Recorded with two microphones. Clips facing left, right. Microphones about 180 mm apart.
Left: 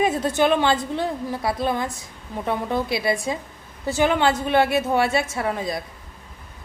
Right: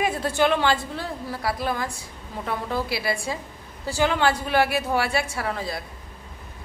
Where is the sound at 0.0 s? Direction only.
20° left (ahead or behind).